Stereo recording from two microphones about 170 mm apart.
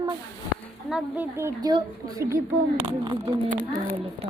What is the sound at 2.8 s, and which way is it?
Speech, 25° right (ahead or behind).